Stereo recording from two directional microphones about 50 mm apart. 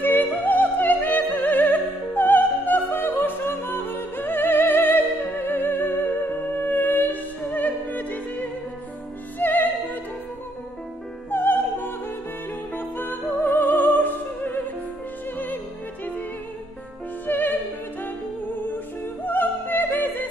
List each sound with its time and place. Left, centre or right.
0.0 s music: left
11.2 s music: left
17.3 s music: left
19.2 s opera: left